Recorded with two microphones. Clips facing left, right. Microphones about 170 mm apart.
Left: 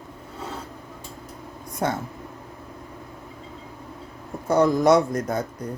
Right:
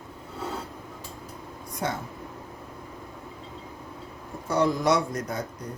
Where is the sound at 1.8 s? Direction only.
55° left (ahead or behind).